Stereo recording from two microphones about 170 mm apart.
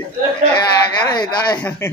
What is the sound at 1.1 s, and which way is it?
Speech, 25° left (ahead or behind).